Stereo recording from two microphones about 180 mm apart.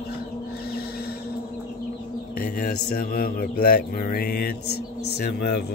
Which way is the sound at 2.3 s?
55° left (ahead or behind).